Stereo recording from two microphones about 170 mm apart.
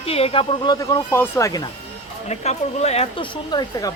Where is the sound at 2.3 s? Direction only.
40° left (ahead or behind); by 3.9 s 25° left (ahead or behind).